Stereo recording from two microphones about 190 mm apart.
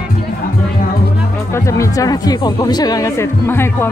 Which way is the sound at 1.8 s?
20° left (ahead or behind).